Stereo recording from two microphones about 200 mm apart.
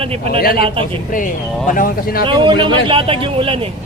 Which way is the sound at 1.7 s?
45° left (ahead or behind).